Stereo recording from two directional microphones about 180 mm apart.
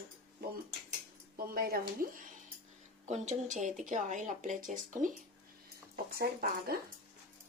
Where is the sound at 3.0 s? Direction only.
40° right (ahead or behind).